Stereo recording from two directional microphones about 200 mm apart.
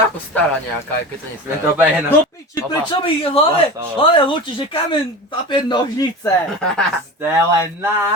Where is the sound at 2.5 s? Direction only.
25° left (ahead or behind).